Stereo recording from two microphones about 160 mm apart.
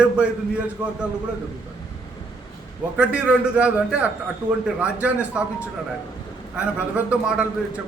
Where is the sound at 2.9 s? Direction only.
10° right (ahead or behind).